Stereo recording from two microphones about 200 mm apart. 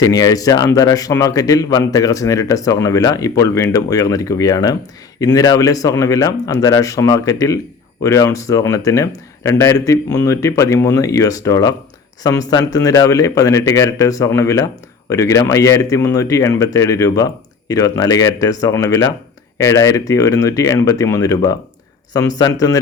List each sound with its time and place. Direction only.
0.0 s a man's voice: 20° left (ahead or behind)